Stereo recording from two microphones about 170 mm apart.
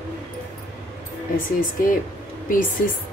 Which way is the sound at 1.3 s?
55° left (ahead or behind).